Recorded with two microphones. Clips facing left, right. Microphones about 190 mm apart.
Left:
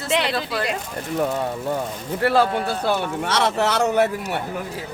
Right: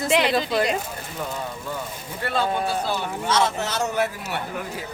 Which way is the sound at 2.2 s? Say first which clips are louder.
Left 5 dB; 70° left (ahead or behind).